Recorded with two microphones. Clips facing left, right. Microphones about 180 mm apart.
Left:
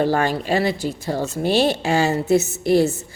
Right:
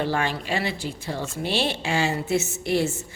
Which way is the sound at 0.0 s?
40° left (ahead or behind).